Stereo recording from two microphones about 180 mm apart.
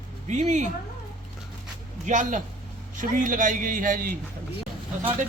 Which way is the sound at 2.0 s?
45° right (ahead or behind).